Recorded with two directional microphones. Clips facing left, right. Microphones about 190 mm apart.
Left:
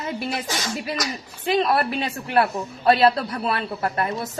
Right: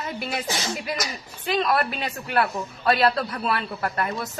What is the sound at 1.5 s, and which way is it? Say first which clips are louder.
A woman's voice: left 3 dB; 30° left (ahead or behind).